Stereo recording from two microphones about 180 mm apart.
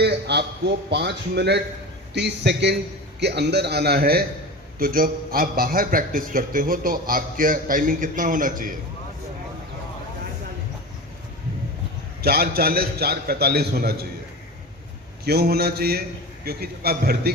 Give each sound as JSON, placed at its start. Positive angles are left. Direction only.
{"t": 0.0, "sound": "a man's voice", "side_deg": -65}
{"t": 12.2, "sound": "a man's voice", "side_deg": -55}
{"t": 15.2, "sound": "a man's voice", "side_deg": -60}